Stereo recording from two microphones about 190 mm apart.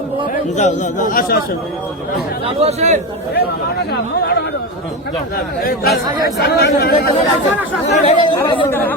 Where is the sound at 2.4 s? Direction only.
35° right (ahead or behind).